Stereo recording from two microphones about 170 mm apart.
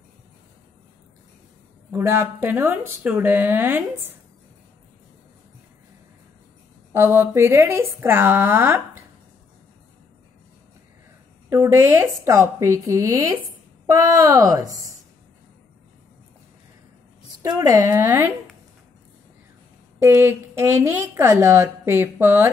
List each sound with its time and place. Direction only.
1.9 s a woman's voice: 15° right (ahead or behind)
6.9 s a woman's voice: 15° right (ahead or behind)
11.4 s a woman's voice: 15° right (ahead or behind)
17.4 s a woman's voice: 20° right (ahead or behind)
20.0 s a woman's voice: 15° right (ahead or behind)